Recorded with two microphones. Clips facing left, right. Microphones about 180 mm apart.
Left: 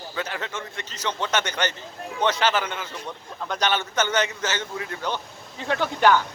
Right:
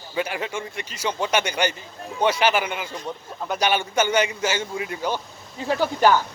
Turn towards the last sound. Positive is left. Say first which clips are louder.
# right 1 dB
turn(degrees=-10)  # may be behind; listen again after turning